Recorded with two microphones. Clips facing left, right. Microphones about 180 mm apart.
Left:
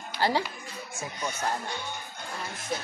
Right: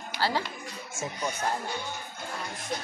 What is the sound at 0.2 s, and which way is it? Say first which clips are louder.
Speech: left 3 dB; 20° left (ahead or behind).